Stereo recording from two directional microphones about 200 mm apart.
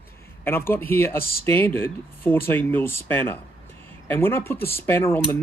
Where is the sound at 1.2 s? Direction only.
50° left (ahead or behind).